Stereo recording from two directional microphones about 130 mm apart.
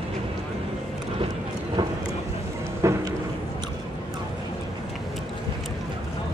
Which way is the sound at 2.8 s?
20° right (ahead or behind).